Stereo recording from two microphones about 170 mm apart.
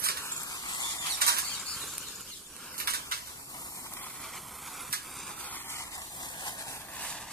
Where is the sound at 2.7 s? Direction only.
65° right (ahead or behind).